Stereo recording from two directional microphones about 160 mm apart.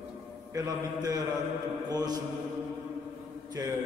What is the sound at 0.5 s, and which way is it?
Mantra, 20° right (ahead or behind).